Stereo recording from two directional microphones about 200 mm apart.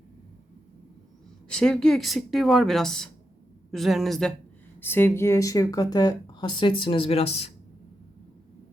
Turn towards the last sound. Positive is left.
turn(degrees=30)  # may be behind; listen again after turning